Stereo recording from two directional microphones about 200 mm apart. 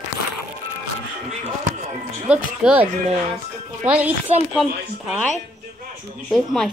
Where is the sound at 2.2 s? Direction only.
5° right (ahead or behind).